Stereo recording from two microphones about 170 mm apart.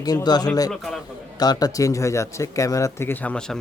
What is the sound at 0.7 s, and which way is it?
Speech, centre (ahead or behind).